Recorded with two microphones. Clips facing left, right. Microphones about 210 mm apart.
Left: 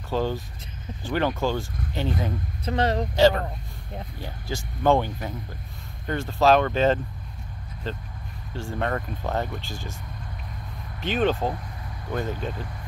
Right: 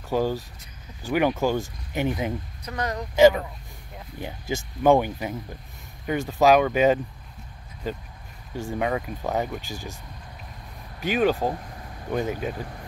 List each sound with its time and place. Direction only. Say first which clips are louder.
0.1 s speech: right 2 dB; 10° right (ahead or behind)
2.6 s speech: left 7 dB; 25° left (ahead or behind)
3.2 s speech: right 4 dB; 15° right (ahead or behind)
8.8 s speech: right 1 dB; 5° right (ahead or behind)
11.0 s speech: right 1 dB; 10° right (ahead or behind)